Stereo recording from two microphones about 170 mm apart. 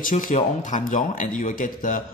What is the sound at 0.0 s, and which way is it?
Speech, 50° left (ahead or behind).